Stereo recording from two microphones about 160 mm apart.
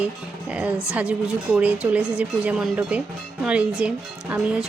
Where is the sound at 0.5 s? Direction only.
10° right (ahead or behind).